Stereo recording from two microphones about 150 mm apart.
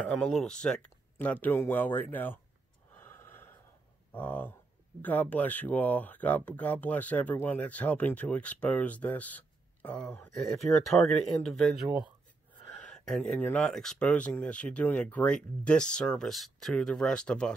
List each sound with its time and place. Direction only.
0.0 s speech: 5° left (ahead or behind)
3.2 s gasp: 15° left (ahead or behind)
4.1 s speech: 15° left (ahead or behind)